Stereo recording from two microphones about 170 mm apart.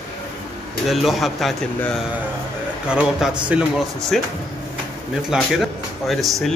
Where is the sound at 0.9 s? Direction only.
Centre (ahead or behind).